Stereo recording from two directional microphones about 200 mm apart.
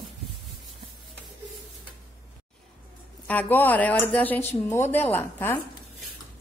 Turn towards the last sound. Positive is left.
turn(degrees=10)  # may be behind; listen again after turning